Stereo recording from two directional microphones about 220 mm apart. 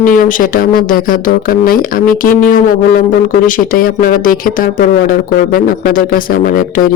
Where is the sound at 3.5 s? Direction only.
40° left (ahead or behind).